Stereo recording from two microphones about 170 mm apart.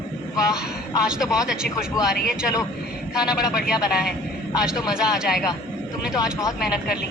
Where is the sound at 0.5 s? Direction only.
5° right (ahead or behind).